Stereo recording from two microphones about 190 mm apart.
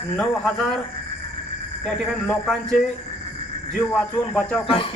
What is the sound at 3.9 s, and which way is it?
Speech, 5° left (ahead or behind).